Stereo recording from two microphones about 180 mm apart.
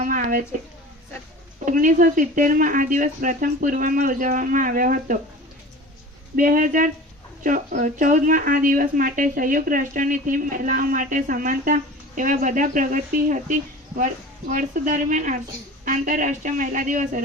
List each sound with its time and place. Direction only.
0.0 s a sound: 50° right (ahead or behind)
1.5 s speech: 45° right (ahead or behind)
6.3 s speech: 50° right (ahead or behind)